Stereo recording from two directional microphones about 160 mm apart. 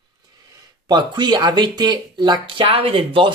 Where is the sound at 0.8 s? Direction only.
25° right (ahead or behind).